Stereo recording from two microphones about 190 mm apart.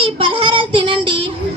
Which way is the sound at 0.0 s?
30° right (ahead or behind).